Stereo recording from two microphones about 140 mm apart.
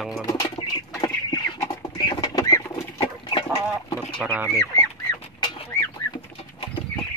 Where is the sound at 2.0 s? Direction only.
30° left (ahead or behind).